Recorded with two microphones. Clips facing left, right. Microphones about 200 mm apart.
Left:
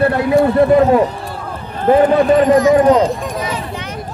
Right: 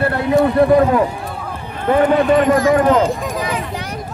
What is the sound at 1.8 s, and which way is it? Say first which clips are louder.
Speech: left 3 dB; 35° left (ahead or behind).